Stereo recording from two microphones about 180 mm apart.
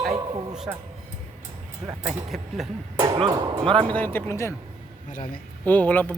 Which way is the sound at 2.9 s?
25° right (ahead or behind).